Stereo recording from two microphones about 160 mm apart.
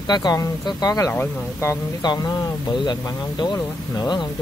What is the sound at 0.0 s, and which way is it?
Speech, 25° left (ahead or behind).